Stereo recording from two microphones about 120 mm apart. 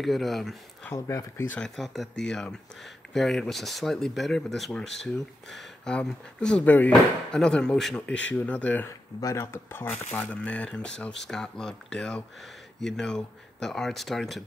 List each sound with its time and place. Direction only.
0.0 s speech: centre (ahead or behind)
0.8 s speech: 25° left (ahead or behind)
1.6 s speech: 5° left (ahead or behind)